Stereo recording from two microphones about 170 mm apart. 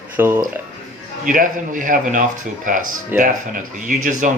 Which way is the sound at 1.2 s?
55° right (ahead or behind).